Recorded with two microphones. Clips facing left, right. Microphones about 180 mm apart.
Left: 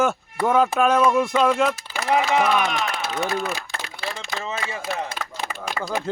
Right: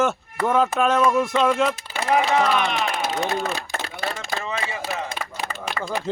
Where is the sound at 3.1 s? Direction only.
35° right (ahead or behind).